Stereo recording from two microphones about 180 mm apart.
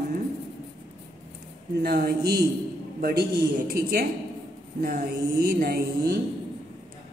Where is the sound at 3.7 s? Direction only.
55° right (ahead or behind).